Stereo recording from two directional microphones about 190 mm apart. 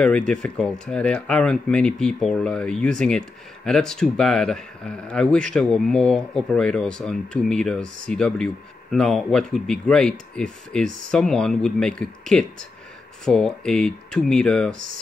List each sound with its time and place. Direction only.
0.0 s speech: 5° left (ahead or behind)